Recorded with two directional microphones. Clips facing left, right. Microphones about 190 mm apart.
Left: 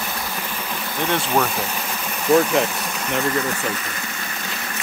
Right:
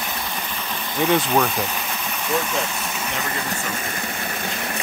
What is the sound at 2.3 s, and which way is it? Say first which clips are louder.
Speech: left 9 dB; 65° left (ahead or behind).